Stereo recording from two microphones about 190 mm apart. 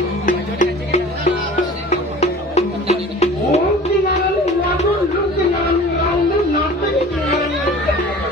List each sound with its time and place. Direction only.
0.3 s music: 40° left (ahead or behind)